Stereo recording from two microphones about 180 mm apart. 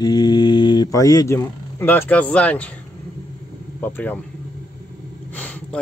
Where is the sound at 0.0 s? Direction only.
20° left (ahead or behind).